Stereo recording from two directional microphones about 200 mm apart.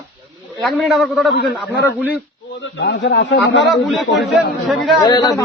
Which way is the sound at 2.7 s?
60° left (ahead or behind).